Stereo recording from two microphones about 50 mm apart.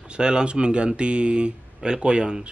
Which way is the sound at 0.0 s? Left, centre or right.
Centre.